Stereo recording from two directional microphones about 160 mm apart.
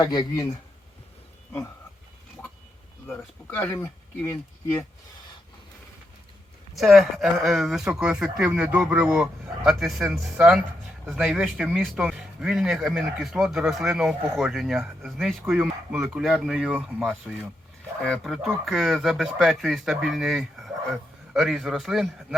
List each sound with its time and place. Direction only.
0.0 s speech: 25° left (ahead or behind)
3.1 s speech: 10° left (ahead or behind)
6.7 s speech: centre (ahead or behind)